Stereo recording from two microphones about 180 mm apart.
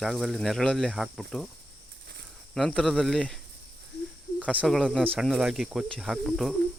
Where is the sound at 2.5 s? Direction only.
5° left (ahead or behind).